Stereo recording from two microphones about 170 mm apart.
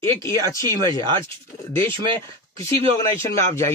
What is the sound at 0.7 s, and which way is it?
Speech, 25° right (ahead or behind).